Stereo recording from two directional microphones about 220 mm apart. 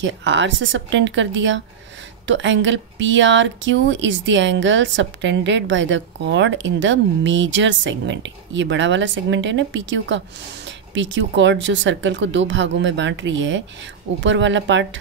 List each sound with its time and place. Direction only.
0.0 s speech: 55° right (ahead or behind)